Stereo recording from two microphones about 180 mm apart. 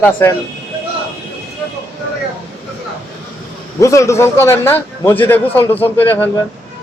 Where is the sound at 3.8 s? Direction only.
15° left (ahead or behind).